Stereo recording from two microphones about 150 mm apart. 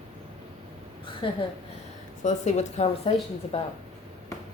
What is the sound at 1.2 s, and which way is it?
Speech, 35° left (ahead or behind).